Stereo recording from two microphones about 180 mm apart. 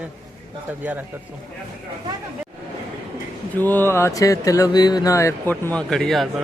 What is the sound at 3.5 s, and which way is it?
Speech, 10° left (ahead or behind).